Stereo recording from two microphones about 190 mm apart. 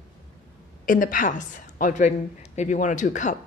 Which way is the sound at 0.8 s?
45° left (ahead or behind).